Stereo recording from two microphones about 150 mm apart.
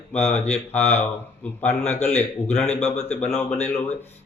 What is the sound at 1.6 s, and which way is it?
Speech, 10° left (ahead or behind).